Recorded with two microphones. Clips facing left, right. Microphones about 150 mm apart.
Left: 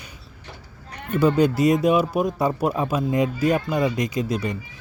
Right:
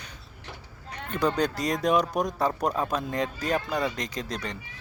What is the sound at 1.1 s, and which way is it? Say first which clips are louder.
Speech: left 7 dB; 10° left (ahead or behind).